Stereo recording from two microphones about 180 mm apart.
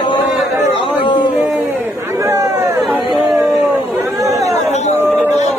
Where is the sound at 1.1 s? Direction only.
25° left (ahead or behind).